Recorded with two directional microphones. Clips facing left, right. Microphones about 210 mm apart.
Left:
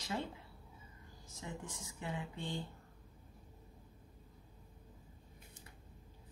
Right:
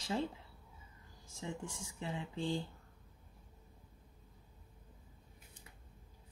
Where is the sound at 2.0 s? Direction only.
25° right (ahead or behind).